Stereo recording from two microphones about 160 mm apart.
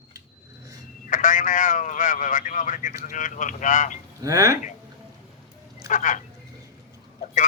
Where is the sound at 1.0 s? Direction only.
55° left (ahead or behind).